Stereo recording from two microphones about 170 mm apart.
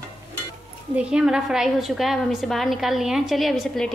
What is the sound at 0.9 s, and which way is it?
A woman's voice, 5° right (ahead or behind).